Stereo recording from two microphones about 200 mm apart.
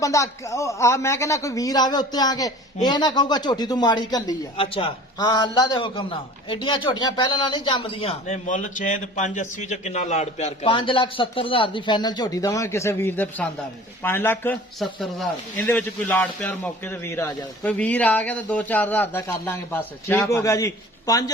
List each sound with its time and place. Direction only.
0.0 s a man's voice: 15° left (ahead or behind)